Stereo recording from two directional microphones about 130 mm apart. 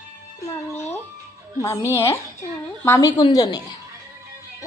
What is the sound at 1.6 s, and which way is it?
Speech, 20° left (ahead or behind).